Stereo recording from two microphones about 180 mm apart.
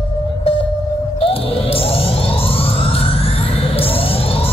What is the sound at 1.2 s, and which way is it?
Music, 30° left (ahead or behind).